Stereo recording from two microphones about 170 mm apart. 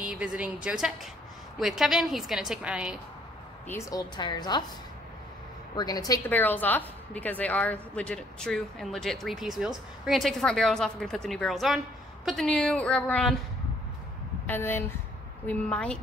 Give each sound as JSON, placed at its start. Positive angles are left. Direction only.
{"t": 0.0, "sound": "a woman's voice", "side_deg": -5}
{"t": 3.6, "sound": "a woman's voice", "side_deg": 15}
{"t": 4.2, "sound": "a woman's voice", "side_deg": 25}
{"t": 5.8, "sound": "a woman's voice", "side_deg": 20}
{"t": 6.3, "sound": "a woman's voice", "side_deg": 10}
{"t": 14.4, "sound": "a woman's voice", "side_deg": 10}